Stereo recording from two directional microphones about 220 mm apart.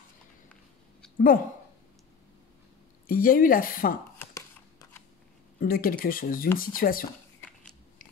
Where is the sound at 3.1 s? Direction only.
40° left (ahead or behind).